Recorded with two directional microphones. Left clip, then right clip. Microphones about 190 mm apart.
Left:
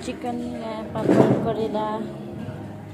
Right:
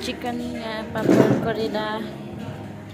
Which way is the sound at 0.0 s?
5° left (ahead or behind).